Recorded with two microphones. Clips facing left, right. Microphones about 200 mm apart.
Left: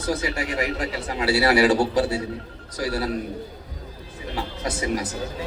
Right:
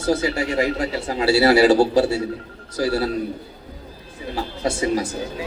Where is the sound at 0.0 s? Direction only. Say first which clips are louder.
Right 5 dB; 25° right (ahead or behind).